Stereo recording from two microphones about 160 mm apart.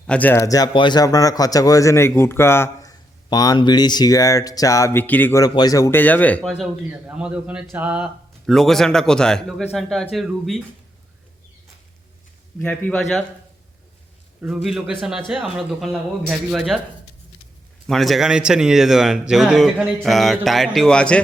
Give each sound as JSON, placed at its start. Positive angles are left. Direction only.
{"t": 0.1, "sound": "speech", "side_deg": 10}
{"t": 7.1, "sound": "a man's voice", "side_deg": -5}
{"t": 12.6, "sound": "a man's voice", "side_deg": 10}
{"t": 14.4, "sound": "a man's voice", "side_deg": 0}
{"t": 17.8, "sound": "a man's voice", "side_deg": 0}